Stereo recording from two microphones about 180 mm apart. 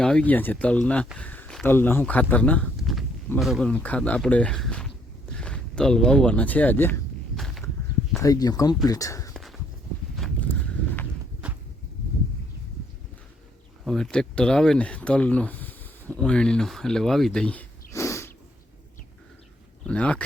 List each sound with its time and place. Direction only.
0.0 s speech: 5° left (ahead or behind)
7.3 s walk: centre (ahead or behind)
8.2 s speech: 20° left (ahead or behind)
9.3 s walk: centre (ahead or behind)
10.2 s a sound: centre (ahead or behind)
13.8 s speech: centre (ahead or behind)
19.8 s speech: 5° left (ahead or behind)